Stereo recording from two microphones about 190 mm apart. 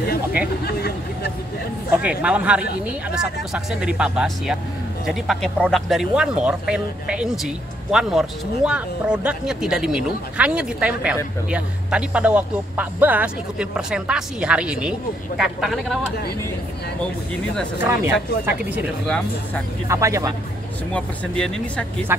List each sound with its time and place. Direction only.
0.7 s speech: 55° left (ahead or behind)
2.0 s speech: 5° right (ahead or behind)
17.7 s speech: 15° right (ahead or behind)
19.0 s speech: 5° left (ahead or behind)
19.9 s speech: 15° right (ahead or behind)
20.9 s speech: 5° left (ahead or behind)